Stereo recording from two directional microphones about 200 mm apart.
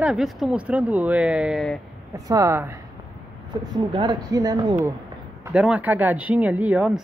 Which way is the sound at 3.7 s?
20° right (ahead or behind).